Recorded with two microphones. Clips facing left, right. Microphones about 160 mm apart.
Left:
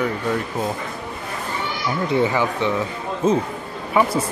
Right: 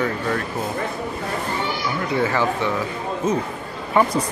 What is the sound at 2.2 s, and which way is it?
Speech, 15° left (ahead or behind).